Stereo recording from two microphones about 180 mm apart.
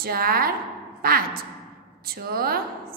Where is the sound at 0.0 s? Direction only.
55° right (ahead or behind).